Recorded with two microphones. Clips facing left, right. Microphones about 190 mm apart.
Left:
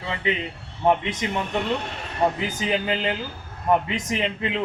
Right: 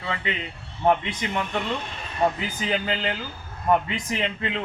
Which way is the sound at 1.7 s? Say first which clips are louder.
Left 3 dB; 65° left (ahead or behind).